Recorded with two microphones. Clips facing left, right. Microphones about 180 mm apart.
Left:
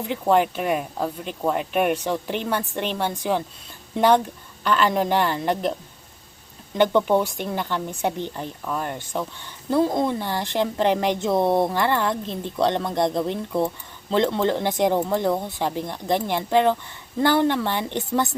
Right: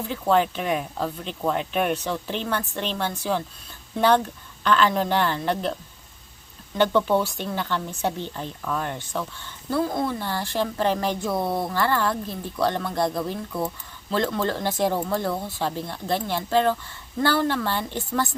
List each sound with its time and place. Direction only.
0.0 s speech: 15° left (ahead or behind)
6.7 s speech: 15° left (ahead or behind)
9.6 s a woman's voice: 20° left (ahead or behind)